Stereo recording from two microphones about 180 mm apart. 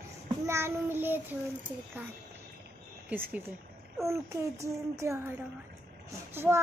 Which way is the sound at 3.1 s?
10° right (ahead or behind).